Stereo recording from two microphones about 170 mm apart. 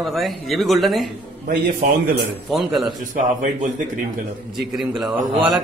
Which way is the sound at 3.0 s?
50° right (ahead or behind).